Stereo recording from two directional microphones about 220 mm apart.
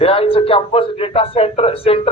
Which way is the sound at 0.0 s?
25° left (ahead or behind).